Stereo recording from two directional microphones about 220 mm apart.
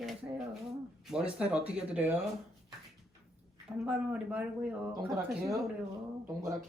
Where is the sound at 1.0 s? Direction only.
5° right (ahead or behind).